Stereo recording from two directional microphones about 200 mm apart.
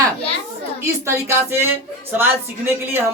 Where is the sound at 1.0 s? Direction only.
15° right (ahead or behind).